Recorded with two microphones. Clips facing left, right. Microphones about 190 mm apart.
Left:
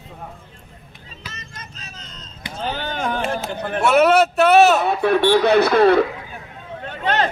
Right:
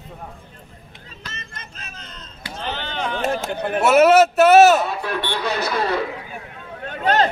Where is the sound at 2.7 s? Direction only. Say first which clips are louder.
Left 2 dB; 45° left (ahead or behind).